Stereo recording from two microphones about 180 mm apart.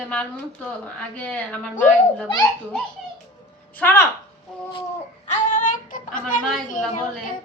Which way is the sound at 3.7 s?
10° left (ahead or behind).